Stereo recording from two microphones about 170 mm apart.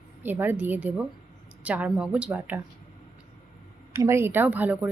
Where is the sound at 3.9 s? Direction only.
15° right (ahead or behind).